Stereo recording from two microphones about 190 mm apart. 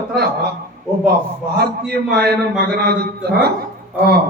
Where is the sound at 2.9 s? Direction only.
55° right (ahead or behind).